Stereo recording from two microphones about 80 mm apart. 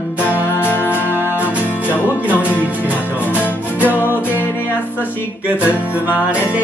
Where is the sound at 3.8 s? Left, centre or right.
Left.